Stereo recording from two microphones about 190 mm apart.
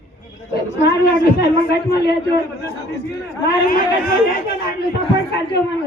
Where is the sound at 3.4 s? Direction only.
50° left (ahead or behind).